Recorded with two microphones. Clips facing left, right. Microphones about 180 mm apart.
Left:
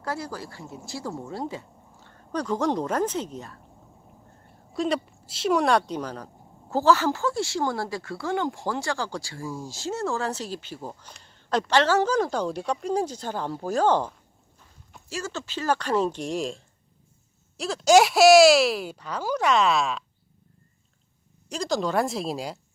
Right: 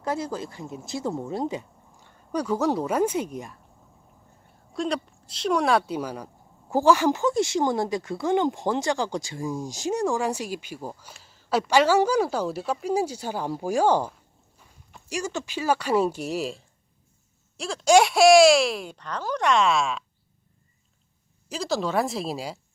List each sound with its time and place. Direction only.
0.0 s speech: 20° right (ahead or behind)
4.7 s speech: centre (ahead or behind)
21.5 s speech: centre (ahead or behind)